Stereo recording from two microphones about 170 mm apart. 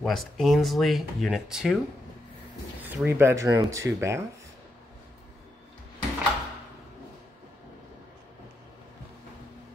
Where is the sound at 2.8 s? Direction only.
10° right (ahead or behind).